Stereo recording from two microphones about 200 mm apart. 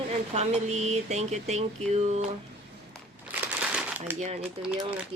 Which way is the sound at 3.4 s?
5° right (ahead or behind).